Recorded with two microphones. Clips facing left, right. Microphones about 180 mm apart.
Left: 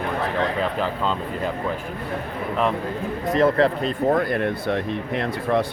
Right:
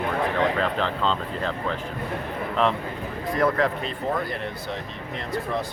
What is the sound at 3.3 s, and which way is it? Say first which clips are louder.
Speech: left 4 dB; 30° left (ahead or behind).